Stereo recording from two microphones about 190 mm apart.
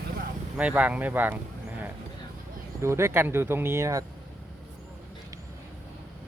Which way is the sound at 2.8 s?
15° right (ahead or behind).